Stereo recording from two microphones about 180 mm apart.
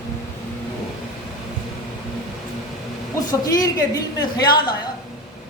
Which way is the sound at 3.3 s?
20° left (ahead or behind).